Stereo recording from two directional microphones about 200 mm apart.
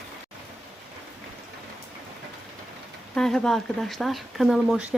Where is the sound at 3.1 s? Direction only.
5° left (ahead or behind).